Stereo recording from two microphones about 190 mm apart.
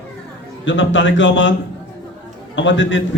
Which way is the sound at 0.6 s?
75° left (ahead or behind).